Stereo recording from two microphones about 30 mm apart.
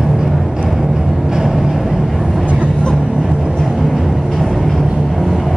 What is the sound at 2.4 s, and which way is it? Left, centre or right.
Vehicle, right.